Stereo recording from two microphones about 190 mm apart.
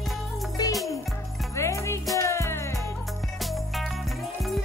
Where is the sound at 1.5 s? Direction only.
15° left (ahead or behind).